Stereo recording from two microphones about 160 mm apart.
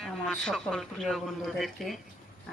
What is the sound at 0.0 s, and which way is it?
Speech, 5° left (ahead or behind).